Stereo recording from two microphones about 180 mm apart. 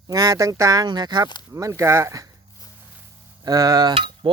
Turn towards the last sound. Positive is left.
turn(degrees=-30)  # may be behind; listen again after turning